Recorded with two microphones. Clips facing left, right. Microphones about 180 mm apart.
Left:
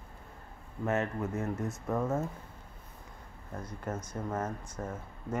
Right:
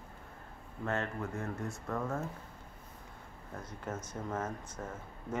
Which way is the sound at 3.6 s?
10° left (ahead or behind).